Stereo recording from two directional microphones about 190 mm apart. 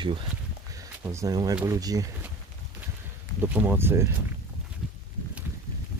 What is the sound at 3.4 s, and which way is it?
Speech, 10° right (ahead or behind).